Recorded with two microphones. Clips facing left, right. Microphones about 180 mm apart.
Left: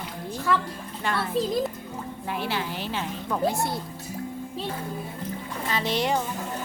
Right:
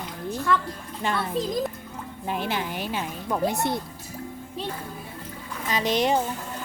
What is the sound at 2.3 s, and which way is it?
A woman's voice, 20° right (ahead or behind).